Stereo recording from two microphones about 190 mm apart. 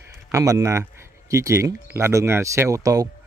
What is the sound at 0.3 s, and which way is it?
Speech, 15° right (ahead or behind).